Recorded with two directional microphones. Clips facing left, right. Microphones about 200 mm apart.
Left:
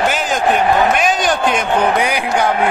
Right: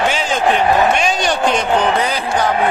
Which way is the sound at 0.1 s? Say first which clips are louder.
Even; centre (ahead or behind).